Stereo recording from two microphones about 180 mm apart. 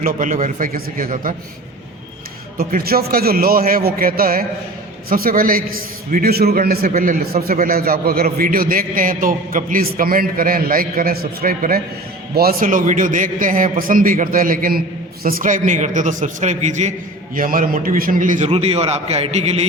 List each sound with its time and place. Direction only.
0.0 s a man's voice: 45° right (ahead or behind)
2.6 s a man's voice: 55° right (ahead or behind); by 19.6 s 35° right (ahead or behind)